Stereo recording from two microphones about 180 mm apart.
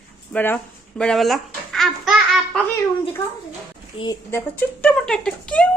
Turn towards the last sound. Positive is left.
turn(degrees=5)  # may be behind; listen again after turning